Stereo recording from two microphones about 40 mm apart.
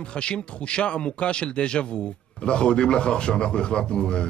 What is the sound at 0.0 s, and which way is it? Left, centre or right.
Speech, left.